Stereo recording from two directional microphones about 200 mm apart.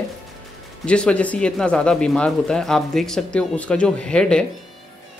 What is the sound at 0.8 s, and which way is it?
Speech, 5° left (ahead or behind).